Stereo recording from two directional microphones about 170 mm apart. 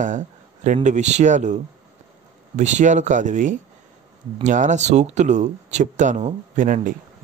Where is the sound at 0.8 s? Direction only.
45° right (ahead or behind).